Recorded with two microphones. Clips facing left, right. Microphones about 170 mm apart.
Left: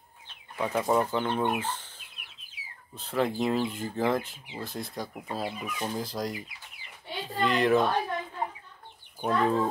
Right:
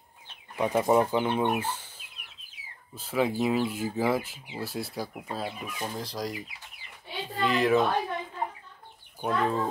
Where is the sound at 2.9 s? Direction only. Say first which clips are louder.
Right 1 dB; 5° right (ahead or behind).